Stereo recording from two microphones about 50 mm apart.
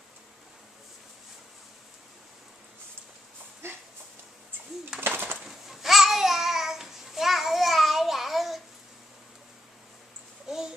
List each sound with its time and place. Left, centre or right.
5.0 s bird: right
5.4 s babbling: centre